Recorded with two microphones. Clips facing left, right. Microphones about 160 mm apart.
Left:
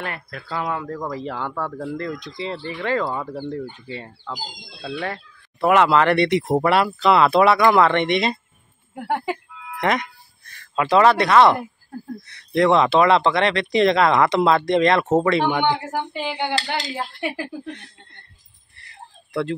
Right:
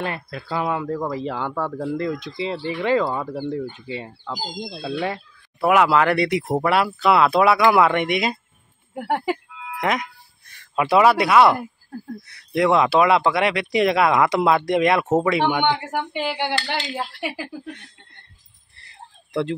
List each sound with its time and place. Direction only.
0.0 s speech: 25° right (ahead or behind)
0.7 s speech: 10° right (ahead or behind)
2.0 s speech: 25° right (ahead or behind)
3.0 s speech: 5° right (ahead or behind)
3.3 s speech: 15° right (ahead or behind)
5.0 s a sound: 15° right (ahead or behind)
5.7 s speech: 5° right (ahead or behind)
19.3 s speech: 20° right (ahead or behind)